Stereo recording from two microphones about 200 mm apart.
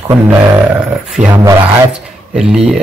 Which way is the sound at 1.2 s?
35° right (ahead or behind).